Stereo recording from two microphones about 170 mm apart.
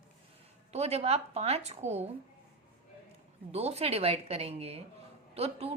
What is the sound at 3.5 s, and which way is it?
A woman's voice, 40° right (ahead or behind).